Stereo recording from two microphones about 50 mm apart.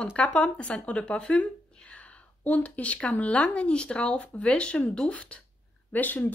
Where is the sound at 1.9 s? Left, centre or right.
Left.